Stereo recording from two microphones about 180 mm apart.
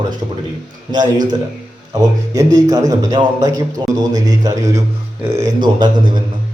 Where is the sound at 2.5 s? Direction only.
20° right (ahead or behind).